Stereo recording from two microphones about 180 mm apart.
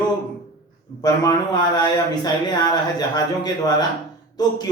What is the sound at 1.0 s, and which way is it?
Speech, 20° left (ahead or behind).